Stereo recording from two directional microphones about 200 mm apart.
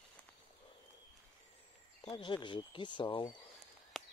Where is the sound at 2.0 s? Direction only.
25° left (ahead or behind).